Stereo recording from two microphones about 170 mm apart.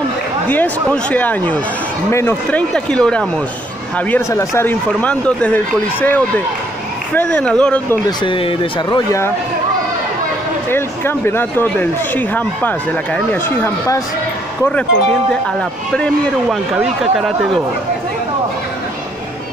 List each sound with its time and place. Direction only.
0.8 s speech: 5° left (ahead or behind)
4.1 s speech: 15° left (ahead or behind)
8.2 s speech: 30° left (ahead or behind)
10.7 s speech: 15° left (ahead or behind)
15.9 s speech: 5° left (ahead or behind)